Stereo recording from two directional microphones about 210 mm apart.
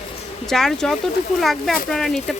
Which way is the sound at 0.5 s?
Centre (ahead or behind).